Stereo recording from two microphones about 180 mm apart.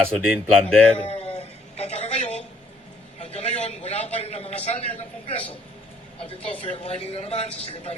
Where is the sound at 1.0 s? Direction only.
35° left (ahead or behind).